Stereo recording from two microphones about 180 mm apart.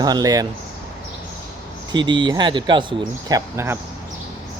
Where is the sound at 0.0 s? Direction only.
20° right (ahead or behind).